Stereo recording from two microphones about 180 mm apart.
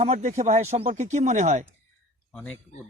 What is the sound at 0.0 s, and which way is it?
Speech, 35° right (ahead or behind).